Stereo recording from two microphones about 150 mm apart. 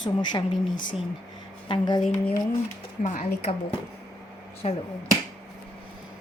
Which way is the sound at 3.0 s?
50° left (ahead or behind).